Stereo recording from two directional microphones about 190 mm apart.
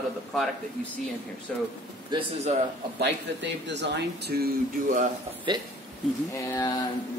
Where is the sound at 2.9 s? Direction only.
65° right (ahead or behind); by 5.1 s 50° right (ahead or behind).